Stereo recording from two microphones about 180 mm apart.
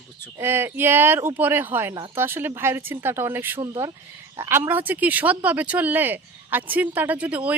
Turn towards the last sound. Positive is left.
turn(degrees=-10)  # may be behind; listen again after turning